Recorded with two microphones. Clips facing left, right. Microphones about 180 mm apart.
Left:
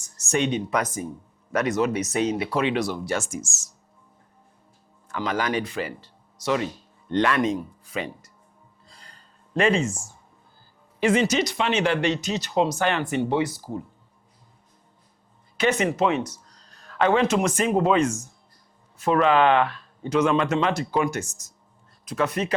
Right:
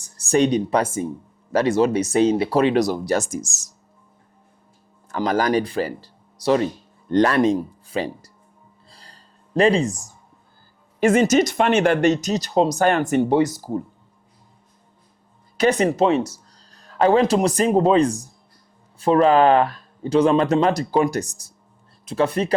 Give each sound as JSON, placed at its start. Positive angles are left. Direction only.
{"t": 0.0, "sound": "speech", "side_deg": -35}
{"t": 5.0, "sound": "speech", "side_deg": -40}
{"t": 8.9, "sound": "a sound", "side_deg": -35}
{"t": 11.0, "sound": "speech", "side_deg": -45}
{"t": 15.5, "sound": "speech", "side_deg": -35}